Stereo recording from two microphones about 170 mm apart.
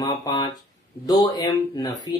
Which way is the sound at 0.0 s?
25° left (ahead or behind).